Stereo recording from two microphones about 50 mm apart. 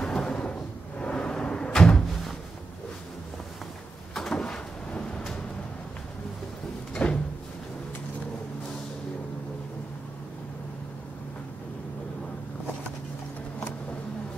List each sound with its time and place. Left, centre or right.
0.0 s cupboard open or close: centre
4.1 s cupboard open or close: centre
6.9 s a sound: centre